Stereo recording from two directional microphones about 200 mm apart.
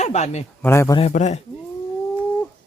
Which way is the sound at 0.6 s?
15° left (ahead or behind).